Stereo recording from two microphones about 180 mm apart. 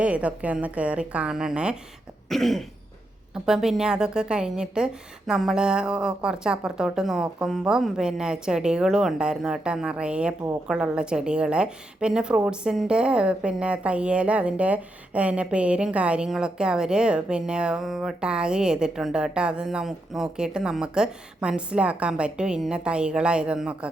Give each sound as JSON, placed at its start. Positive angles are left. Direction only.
{"t": 0.0, "sound": "a woman's voice", "side_deg": -5}